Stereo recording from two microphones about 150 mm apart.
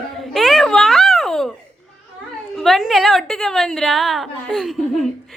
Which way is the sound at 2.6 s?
Centre (ahead or behind).